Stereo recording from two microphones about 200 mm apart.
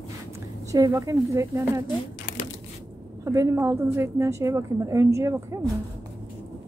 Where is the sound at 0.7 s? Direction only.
15° right (ahead or behind).